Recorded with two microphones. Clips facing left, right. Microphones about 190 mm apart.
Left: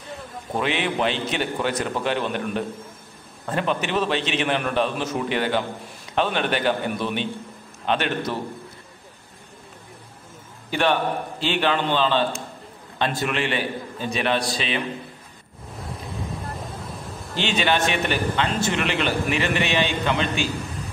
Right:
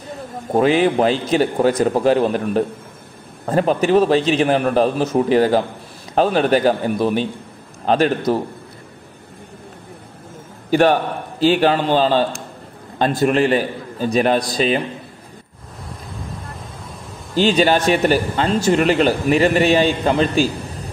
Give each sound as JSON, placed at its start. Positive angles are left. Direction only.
{"t": 0.3, "sound": "a man's voice", "side_deg": -45}
{"t": 10.7, "sound": "a man's voice", "side_deg": -40}
{"t": 17.4, "sound": "a man's voice", "side_deg": -40}